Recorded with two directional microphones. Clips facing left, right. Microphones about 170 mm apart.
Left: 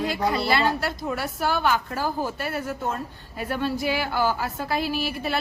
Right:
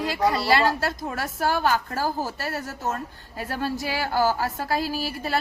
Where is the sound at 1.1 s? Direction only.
45° right (ahead or behind).